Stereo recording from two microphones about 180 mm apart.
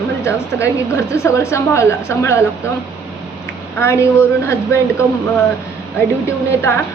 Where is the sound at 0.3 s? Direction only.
15° left (ahead or behind).